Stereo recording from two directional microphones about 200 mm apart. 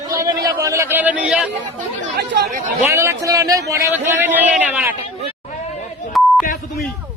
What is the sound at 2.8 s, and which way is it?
A man's voice, 15° right (ahead or behind).